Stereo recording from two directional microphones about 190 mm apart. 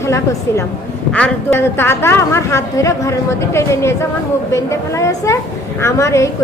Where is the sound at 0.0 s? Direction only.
15° left (ahead or behind).